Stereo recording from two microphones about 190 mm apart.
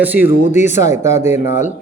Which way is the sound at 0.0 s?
10° right (ahead or behind).